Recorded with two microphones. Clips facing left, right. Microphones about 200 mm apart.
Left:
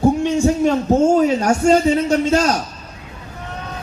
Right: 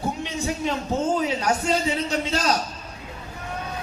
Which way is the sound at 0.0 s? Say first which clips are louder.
Left 13 dB; 50° left (ahead or behind).